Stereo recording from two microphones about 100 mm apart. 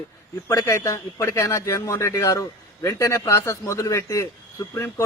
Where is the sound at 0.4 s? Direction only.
30° left (ahead or behind).